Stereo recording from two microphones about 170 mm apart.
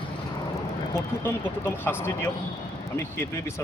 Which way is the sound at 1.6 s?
15° left (ahead or behind).